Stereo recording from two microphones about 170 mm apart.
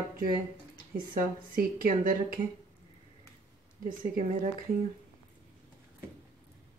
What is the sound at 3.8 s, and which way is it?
Speech, 50° right (ahead or behind).